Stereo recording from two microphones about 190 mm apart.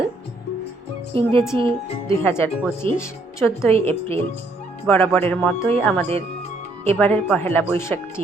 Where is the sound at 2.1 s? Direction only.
15° left (ahead or behind).